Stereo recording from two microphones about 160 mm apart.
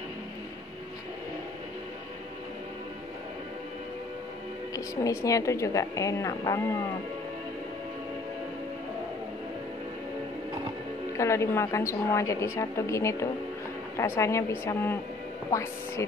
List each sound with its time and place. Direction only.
4.7 s a woman's voice: 20° left (ahead or behind)
11.1 s a woman's voice: 15° left (ahead or behind)